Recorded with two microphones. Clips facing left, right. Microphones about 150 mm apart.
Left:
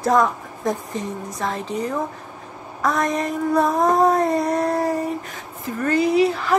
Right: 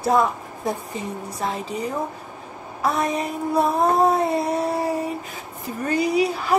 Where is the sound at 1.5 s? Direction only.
10° right (ahead or behind).